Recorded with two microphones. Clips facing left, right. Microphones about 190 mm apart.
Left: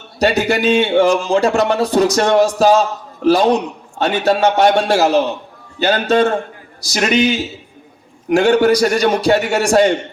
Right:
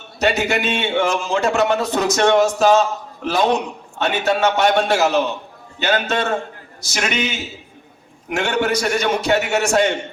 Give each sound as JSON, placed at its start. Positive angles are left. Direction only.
{"t": 0.2, "sound": "speech", "side_deg": 35}